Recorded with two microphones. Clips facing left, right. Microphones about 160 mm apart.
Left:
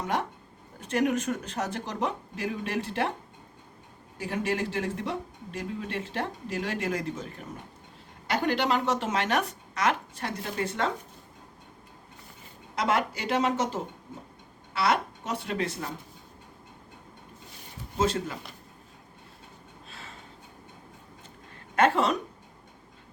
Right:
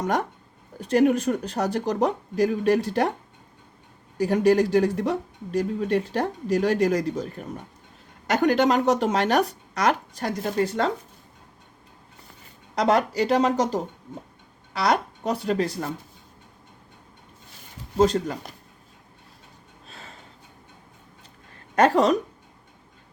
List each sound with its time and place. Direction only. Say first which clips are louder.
0.0 s speech: right 5 dB; 40° right (ahead or behind)
4.2 s speech: right 11 dB; 40° right (ahead or behind)
12.7 s speech: right 6 dB; 35° right (ahead or behind)
17.9 s speech: right 7 dB; 35° right (ahead or behind)
19.9 s a sound: right 2 dB; 40° right (ahead or behind)
21.8 s speech: right 5 dB; 40° right (ahead or behind)